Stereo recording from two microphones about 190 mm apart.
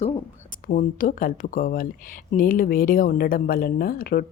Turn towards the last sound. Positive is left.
turn(degrees=55)  # may be behind; listen again after turning